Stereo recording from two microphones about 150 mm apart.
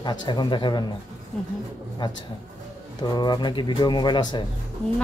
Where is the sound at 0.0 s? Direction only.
30° left (ahead or behind).